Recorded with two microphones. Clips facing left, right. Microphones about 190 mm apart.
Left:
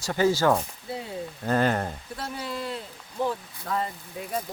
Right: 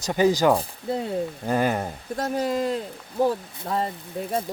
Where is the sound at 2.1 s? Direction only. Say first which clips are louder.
Right 11 dB; 45° right (ahead or behind).